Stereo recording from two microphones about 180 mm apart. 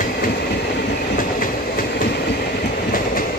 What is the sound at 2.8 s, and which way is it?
Train, 50° left (ahead or behind).